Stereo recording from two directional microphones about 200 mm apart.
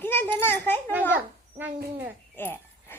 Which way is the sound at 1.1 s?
10° right (ahead or behind).